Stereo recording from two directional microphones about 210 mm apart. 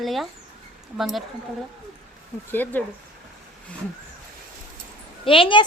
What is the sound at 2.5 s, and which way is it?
Speech, 10° left (ahead or behind).